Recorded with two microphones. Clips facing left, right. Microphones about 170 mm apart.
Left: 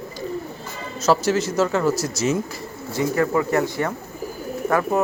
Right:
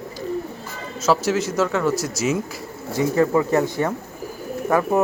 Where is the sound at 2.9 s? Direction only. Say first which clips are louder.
Right 2 dB; 20° right (ahead or behind).